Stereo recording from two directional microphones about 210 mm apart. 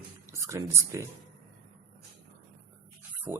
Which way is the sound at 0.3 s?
15° right (ahead or behind).